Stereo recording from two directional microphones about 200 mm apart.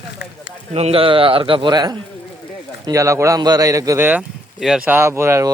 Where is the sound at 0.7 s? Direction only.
30° right (ahead or behind).